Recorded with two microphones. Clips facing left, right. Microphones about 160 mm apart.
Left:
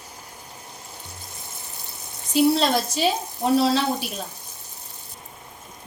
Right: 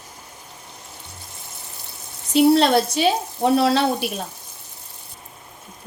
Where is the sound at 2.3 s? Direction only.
65° right (ahead or behind).